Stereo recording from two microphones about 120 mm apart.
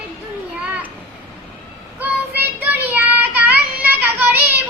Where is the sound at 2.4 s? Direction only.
15° right (ahead or behind).